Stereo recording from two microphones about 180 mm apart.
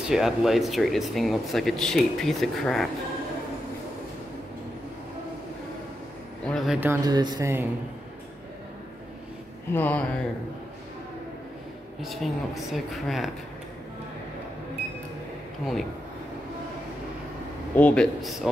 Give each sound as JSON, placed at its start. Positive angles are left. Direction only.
{"t": 0.1, "sound": "speech", "side_deg": 0}
{"t": 6.4, "sound": "speech", "side_deg": 0}
{"t": 6.9, "sound": "speech", "side_deg": -20}
{"t": 9.7, "sound": "speech", "side_deg": 10}
{"t": 12.0, "sound": "speech", "side_deg": 0}
{"t": 15.6, "sound": "speech", "side_deg": 0}
{"t": 17.7, "sound": "speech", "side_deg": 5}